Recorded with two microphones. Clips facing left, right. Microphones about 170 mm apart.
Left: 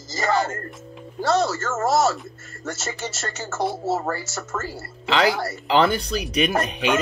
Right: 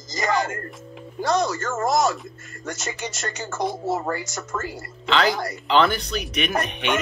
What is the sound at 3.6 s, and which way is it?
Speech, 5° left (ahead or behind).